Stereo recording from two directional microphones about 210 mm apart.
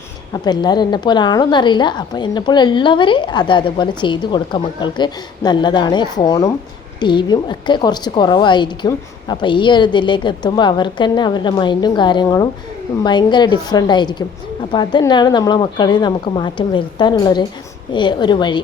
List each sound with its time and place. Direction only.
0.4 s a woman's voice: 20° left (ahead or behind)